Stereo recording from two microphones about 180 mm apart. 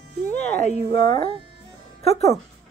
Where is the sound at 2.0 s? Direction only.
35° left (ahead or behind).